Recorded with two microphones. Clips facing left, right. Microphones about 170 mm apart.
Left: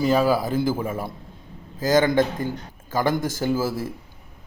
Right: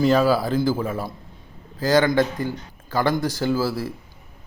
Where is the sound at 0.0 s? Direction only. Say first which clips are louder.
Right 2 dB; 10° left (ahead or behind).